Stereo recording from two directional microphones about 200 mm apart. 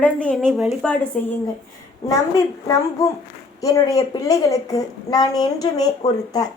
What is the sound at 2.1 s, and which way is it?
A child's voice, 15° left (ahead or behind).